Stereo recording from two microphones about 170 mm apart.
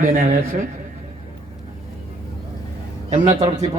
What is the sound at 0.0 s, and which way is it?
Speech, 50° right (ahead or behind).